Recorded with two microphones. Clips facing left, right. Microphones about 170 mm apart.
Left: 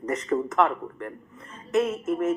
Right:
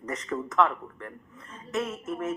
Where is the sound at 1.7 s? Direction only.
20° left (ahead or behind).